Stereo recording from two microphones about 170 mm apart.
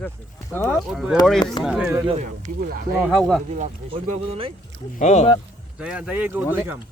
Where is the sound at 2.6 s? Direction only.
60° right (ahead or behind).